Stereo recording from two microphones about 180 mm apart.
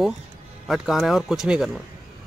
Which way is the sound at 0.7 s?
Centre (ahead or behind).